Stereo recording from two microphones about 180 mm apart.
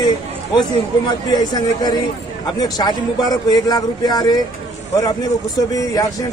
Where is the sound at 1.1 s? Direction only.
25° left (ahead or behind).